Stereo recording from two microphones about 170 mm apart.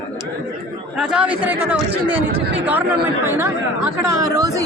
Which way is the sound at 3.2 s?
15° right (ahead or behind).